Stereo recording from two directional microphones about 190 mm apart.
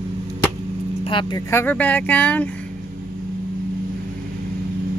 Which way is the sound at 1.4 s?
10° left (ahead or behind).